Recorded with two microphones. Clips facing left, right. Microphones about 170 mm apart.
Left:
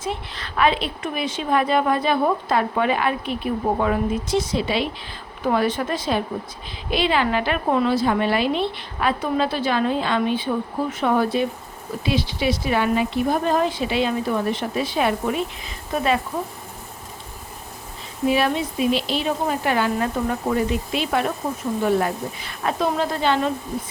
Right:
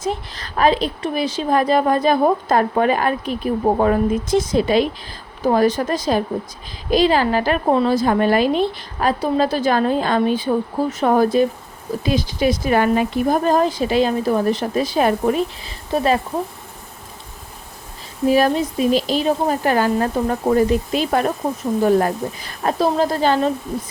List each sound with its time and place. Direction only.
0.0 s a woman's voice: 40° right (ahead or behind)
18.3 s a woman's voice: 40° right (ahead or behind)